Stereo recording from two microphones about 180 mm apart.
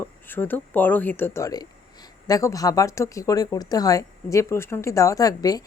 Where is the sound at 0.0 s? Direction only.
10° left (ahead or behind).